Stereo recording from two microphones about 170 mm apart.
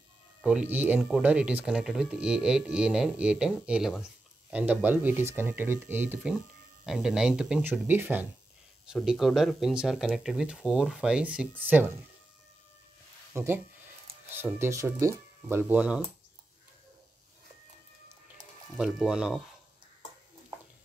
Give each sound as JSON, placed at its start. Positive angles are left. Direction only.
{"t": 0.4, "sound": "speech", "side_deg": -5}
{"t": 13.3, "sound": "speech", "side_deg": -15}
{"t": 18.8, "sound": "speech", "side_deg": -5}